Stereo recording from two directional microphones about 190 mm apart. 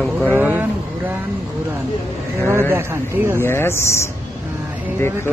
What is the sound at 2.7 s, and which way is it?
Speech, 15° right (ahead or behind).